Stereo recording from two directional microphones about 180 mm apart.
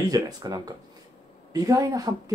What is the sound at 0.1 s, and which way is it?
Speech, 20° right (ahead or behind).